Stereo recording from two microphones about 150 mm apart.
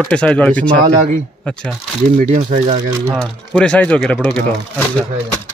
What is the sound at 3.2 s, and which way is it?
Speech, 5° left (ahead or behind).